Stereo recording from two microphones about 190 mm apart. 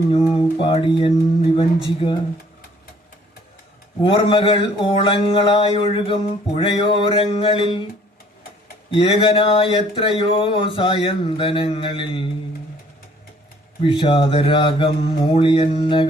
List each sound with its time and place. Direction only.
0.1 s mantra: 30° left (ahead or behind)
4.0 s mantra: 25° left (ahead or behind)
8.9 s mantra: 25° left (ahead or behind)
13.8 s mantra: 25° left (ahead or behind)